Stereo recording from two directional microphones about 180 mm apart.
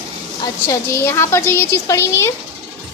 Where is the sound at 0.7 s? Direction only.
15° left (ahead or behind).